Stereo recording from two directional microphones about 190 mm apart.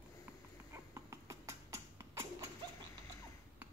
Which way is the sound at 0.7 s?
15° right (ahead or behind).